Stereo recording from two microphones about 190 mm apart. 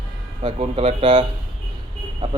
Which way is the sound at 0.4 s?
35° right (ahead or behind).